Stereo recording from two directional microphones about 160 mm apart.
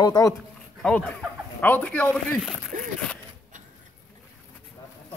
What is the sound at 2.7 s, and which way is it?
Zipper, 55° right (ahead or behind).